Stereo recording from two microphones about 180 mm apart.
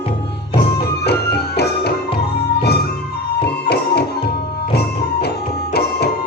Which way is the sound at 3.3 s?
65° left (ahead or behind).